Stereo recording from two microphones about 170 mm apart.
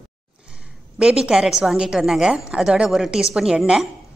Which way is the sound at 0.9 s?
5° right (ahead or behind).